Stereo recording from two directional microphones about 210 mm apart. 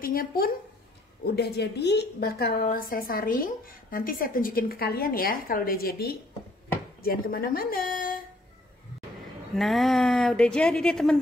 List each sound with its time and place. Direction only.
0.0 s a woman's voice: 45° left (ahead or behind)
9.6 s a woman's voice: centre (ahead or behind)